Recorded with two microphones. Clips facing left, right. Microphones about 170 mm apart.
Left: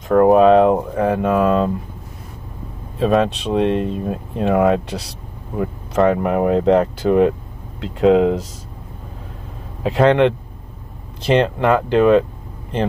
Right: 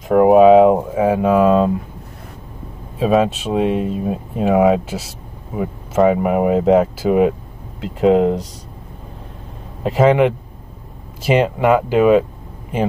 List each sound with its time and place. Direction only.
0.1 s speech: 5° right (ahead or behind)
3.0 s speech: 5° right (ahead or behind)
9.8 s speech: 5° right (ahead or behind)